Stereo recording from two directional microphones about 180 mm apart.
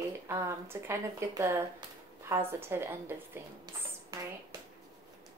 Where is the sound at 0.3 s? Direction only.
15° right (ahead or behind).